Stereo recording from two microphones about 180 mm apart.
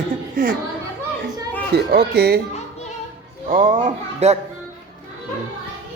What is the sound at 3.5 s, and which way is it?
Speech, 45° right (ahead or behind).